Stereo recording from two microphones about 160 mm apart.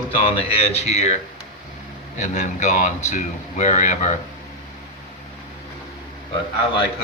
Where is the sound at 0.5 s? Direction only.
40° left (ahead or behind).